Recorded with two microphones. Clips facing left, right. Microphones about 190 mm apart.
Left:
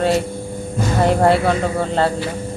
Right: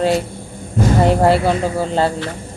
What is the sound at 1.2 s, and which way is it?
Speech, centre (ahead or behind).